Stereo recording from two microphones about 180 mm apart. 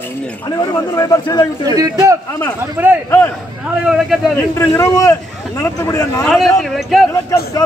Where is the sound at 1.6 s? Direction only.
20° right (ahead or behind); by 4.2 s centre (ahead or behind).